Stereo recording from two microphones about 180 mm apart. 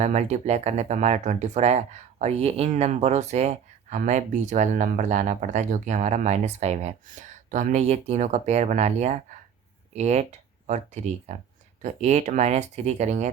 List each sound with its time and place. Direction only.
0.0 s speech: 40° right (ahead or behind)